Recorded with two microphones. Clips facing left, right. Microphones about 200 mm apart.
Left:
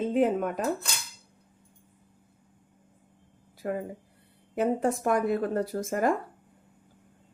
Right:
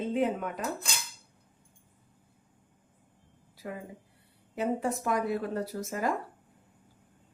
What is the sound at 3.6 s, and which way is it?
A woman's voice, 50° left (ahead or behind).